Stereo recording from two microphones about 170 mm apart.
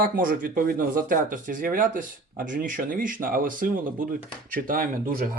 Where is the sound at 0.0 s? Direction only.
55° right (ahead or behind).